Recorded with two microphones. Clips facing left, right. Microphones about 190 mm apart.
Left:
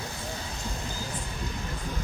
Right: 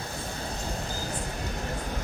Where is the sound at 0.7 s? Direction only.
40° right (ahead or behind).